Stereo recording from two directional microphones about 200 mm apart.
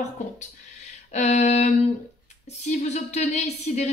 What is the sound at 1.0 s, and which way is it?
A woman's voice, 35° left (ahead or behind).